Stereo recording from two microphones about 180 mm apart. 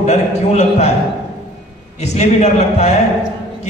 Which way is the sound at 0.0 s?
35° left (ahead or behind).